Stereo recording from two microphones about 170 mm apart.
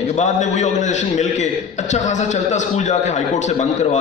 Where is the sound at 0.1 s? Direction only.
45° left (ahead or behind).